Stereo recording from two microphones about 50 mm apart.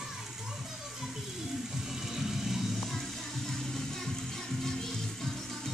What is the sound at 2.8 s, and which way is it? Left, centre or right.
Music, centre.